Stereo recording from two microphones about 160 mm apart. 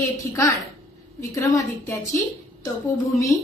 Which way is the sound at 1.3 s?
20° left (ahead or behind).